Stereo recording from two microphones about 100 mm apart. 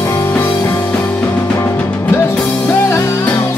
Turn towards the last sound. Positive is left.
turn(degrees=30)  # may be behind; listen again after turning